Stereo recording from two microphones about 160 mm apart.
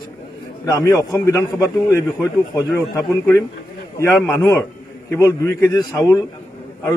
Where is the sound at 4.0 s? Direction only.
10° left (ahead or behind).